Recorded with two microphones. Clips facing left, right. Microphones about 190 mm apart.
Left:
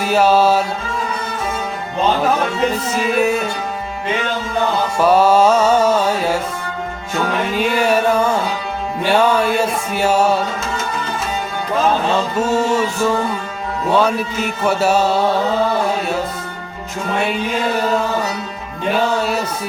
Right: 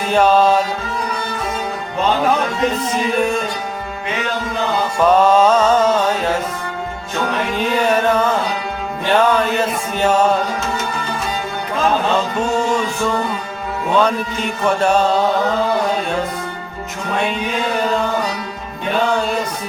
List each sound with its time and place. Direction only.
0.0 s music: 5° left (ahead or behind)
2.8 s music: 5° left (ahead or behind)
4.9 s music: 10° left (ahead or behind)
7.5 s music: 10° left (ahead or behind)
12.4 s music: 5° left (ahead or behind)